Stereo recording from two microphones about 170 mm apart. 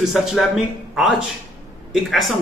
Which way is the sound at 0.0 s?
Centre (ahead or behind).